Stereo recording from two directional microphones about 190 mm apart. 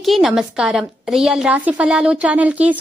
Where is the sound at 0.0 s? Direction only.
Centre (ahead or behind).